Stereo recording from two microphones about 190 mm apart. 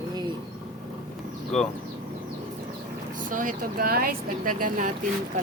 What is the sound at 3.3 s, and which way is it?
Speech, 45° right (ahead or behind).